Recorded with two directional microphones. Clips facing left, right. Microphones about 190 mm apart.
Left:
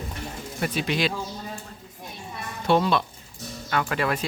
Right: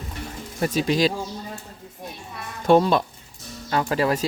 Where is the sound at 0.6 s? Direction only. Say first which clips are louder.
Right 5 dB; 40° right (ahead or behind).